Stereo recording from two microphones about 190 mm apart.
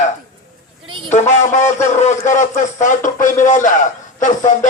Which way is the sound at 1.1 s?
40° left (ahead or behind).